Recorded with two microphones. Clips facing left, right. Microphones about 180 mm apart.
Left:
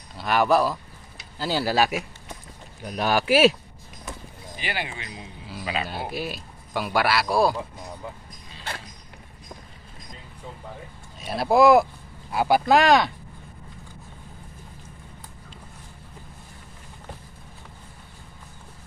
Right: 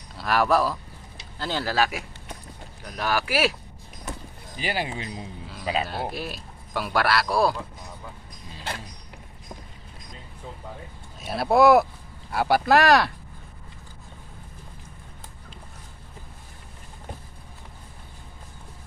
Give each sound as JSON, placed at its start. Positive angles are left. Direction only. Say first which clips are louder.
{"t": 0.2, "sound": "speech", "louder": "left 1 dB", "side_deg": 0}
{"t": 4.6, "sound": "speech", "louder": "right 3 dB", "side_deg": -35}
{"t": 5.8, "sound": "speech", "louder": "even", "side_deg": 0}
{"t": 11.1, "sound": "speech", "louder": "left 1 dB", "side_deg": 0}